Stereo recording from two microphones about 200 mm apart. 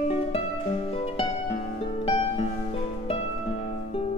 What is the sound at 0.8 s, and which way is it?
Music, 30° left (ahead or behind).